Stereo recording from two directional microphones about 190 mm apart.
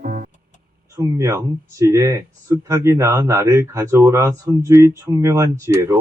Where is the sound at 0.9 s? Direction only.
15° right (ahead or behind).